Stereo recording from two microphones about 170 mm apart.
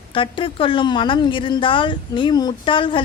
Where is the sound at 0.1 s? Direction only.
30° left (ahead or behind).